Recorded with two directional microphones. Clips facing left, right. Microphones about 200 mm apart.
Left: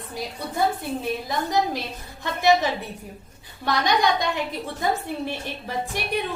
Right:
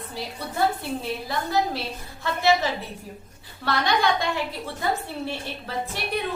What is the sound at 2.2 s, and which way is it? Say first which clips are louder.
Speech: left 2 dB; 15° left (ahead or behind).